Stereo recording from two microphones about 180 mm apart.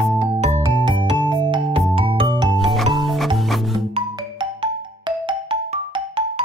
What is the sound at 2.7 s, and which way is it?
Music, centre (ahead or behind).